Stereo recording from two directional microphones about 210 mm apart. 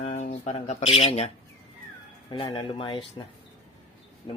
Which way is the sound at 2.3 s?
20° left (ahead or behind).